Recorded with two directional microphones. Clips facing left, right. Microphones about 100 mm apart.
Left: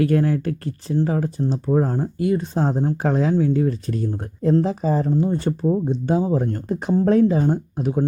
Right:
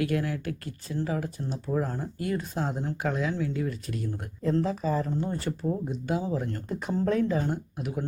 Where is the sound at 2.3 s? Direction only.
30° left (ahead or behind).